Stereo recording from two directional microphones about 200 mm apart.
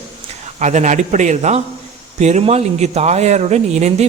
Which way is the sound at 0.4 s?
35° right (ahead or behind).